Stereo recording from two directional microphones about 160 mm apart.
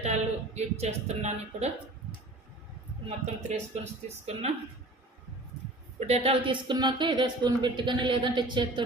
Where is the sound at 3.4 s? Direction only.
45° right (ahead or behind).